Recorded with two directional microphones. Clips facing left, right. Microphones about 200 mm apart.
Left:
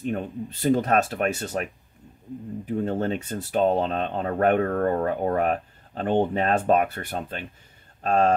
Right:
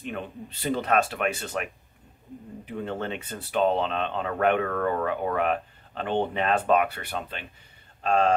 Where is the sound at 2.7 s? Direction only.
40° left (ahead or behind).